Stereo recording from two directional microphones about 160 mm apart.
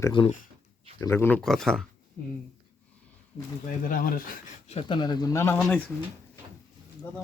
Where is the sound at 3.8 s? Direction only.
60° left (ahead or behind).